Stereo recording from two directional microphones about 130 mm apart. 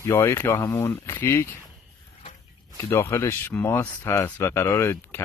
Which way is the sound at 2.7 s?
20° left (ahead or behind).